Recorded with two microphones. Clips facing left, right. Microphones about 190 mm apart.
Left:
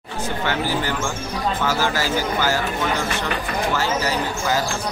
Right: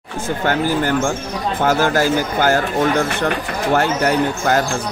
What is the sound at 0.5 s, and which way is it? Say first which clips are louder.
Speech: right 7 dB; 50° right (ahead or behind).